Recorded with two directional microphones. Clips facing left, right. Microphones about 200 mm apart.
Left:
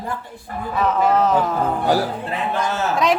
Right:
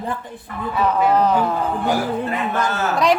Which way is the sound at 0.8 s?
Centre (ahead or behind).